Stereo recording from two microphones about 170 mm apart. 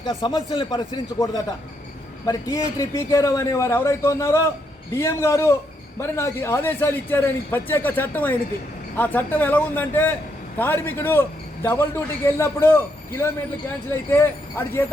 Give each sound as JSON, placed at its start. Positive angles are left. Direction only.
{"t": 0.0, "sound": "speech", "side_deg": 25}
{"t": 2.2, "sound": "a man's voice", "side_deg": 20}